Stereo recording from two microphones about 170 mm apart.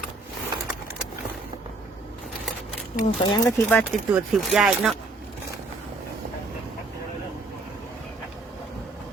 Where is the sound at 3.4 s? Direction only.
10° left (ahead or behind).